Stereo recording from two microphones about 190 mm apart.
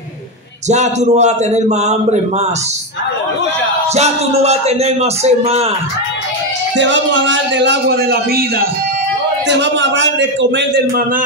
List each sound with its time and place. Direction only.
0.7 s speech: 35° right (ahead or behind)
3.9 s speech: 35° right (ahead or behind)
6.8 s a man's voice: 75° right (ahead or behind); by 8.6 s 55° right (ahead or behind)
9.5 s a man's voice: 70° right (ahead or behind)